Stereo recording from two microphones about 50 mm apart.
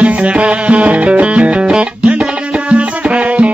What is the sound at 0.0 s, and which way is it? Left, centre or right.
Music, right.